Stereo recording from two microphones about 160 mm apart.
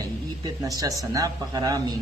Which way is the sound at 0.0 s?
25° right (ahead or behind).